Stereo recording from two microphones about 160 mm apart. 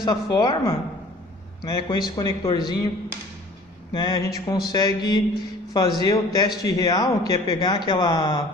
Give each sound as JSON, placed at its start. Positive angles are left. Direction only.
{"t": 0.0, "sound": "a man's voice", "side_deg": 25}
{"t": 3.9, "sound": "a man's voice", "side_deg": 25}